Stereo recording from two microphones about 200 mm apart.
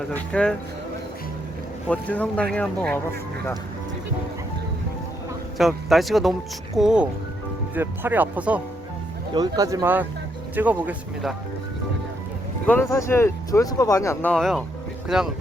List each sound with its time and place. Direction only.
0.1 s speech: 5° left (ahead or behind)
1.9 s speech: 5° left (ahead or behind)
5.5 s speech: centre (ahead or behind)
9.3 s speech: 20° right (ahead or behind)
12.6 s speech: 10° left (ahead or behind)